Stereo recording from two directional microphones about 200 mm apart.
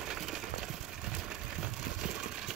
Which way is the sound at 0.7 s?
Centre (ahead or behind).